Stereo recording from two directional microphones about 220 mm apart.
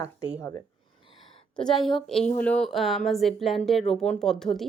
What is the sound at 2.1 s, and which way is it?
Speech, 30° left (ahead or behind).